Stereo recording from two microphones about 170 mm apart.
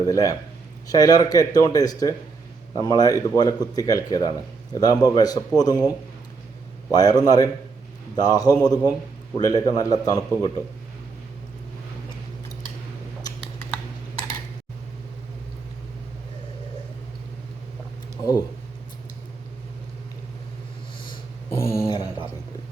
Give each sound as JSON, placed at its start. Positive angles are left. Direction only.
{"t": 0.0, "sound": "a man's voice", "side_deg": 20}
{"t": 6.9, "sound": "a man's voice", "side_deg": 20}
{"t": 21.5, "sound": "a sound", "side_deg": 15}